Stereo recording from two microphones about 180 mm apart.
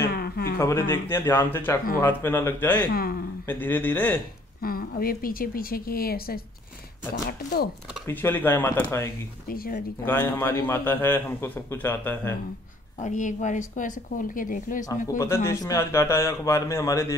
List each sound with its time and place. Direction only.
0.0 s a sound: 55° left (ahead or behind)
0.6 s a man's voice: 15° left (ahead or behind)
2.9 s speech: 55° left (ahead or behind)
3.4 s a man's voice: 10° left (ahead or behind)
4.6 s speech: 55° left (ahead or behind)
8.1 s a man's voice: 10° left (ahead or behind)
9.5 s speech: 55° left (ahead or behind)
10.0 s a man's voice: 10° left (ahead or behind)
13.0 s speech: 45° left (ahead or behind)
15.1 s a man's voice: 15° left (ahead or behind)